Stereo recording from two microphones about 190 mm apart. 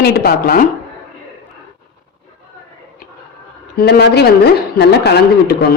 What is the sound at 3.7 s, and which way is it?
A woman's voice, 60° left (ahead or behind).